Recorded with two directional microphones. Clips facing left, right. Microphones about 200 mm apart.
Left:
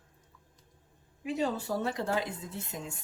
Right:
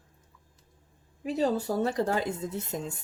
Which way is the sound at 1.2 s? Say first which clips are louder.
Right 4 dB; 40° right (ahead or behind).